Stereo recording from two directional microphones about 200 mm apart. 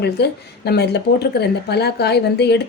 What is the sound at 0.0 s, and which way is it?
A woman's voice, 55° left (ahead or behind).